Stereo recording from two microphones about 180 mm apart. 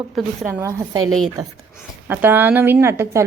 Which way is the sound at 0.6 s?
15° right (ahead or behind).